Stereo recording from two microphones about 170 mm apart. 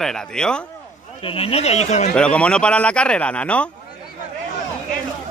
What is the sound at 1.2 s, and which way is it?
Speech, 35° left (ahead or behind).